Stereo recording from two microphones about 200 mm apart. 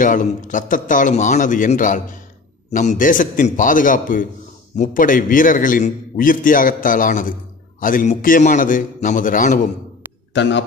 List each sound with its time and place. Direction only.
0.0 s a man's voice: 40° left (ahead or behind)
10.3 s speech: 65° left (ahead or behind)